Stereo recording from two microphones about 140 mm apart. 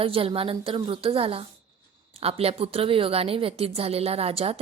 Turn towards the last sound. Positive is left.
turn(degrees=-45)  # may be behind; listen again after turning